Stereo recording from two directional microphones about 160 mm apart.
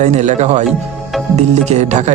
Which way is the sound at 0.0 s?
45° right (ahead or behind).